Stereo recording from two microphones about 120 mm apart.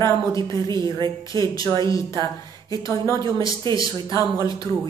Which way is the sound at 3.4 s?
40° right (ahead or behind).